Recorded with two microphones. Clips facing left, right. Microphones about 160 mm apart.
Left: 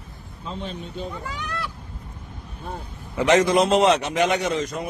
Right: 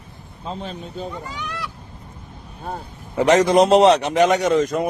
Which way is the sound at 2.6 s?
35° right (ahead or behind).